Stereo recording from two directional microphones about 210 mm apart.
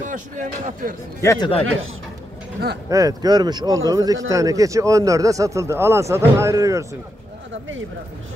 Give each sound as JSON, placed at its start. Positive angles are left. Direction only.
{"t": 0.0, "sound": "speech", "side_deg": -40}
{"t": 1.2, "sound": "speech", "side_deg": 15}
{"t": 2.9, "sound": "speech", "side_deg": -15}